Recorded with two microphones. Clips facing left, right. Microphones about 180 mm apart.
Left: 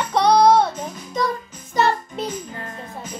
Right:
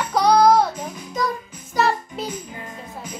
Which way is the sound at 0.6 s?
25° left (ahead or behind).